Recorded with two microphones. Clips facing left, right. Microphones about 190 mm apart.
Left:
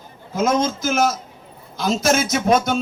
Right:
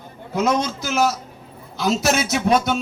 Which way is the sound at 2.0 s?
45° left (ahead or behind).